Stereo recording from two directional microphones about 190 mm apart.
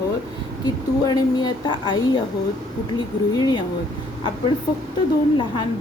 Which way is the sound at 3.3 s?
20° left (ahead or behind).